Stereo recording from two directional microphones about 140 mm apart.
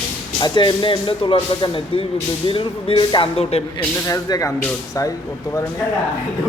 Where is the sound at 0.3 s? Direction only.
30° left (ahead or behind).